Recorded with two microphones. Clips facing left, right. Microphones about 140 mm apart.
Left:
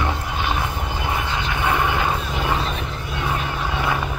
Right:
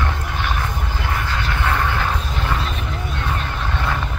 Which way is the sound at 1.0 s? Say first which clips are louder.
Even; 20° left (ahead or behind).